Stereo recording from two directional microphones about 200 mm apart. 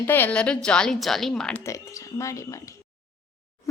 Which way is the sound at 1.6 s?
15° left (ahead or behind).